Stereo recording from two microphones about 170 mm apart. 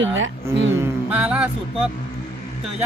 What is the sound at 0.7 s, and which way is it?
Music, 15° right (ahead or behind).